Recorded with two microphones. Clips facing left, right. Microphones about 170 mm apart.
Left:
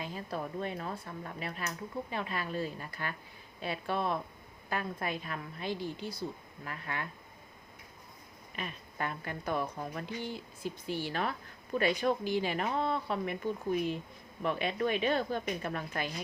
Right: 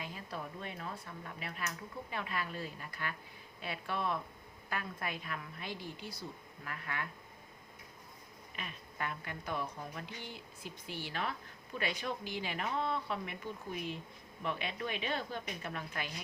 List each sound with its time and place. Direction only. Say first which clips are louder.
0.0 s a woman's voice: left 6 dB; 35° left (ahead or behind)
8.5 s a woman's voice: left 5 dB; 40° left (ahead or behind)
14.4 s a woman's voice: left 7 dB; 45° left (ahead or behind)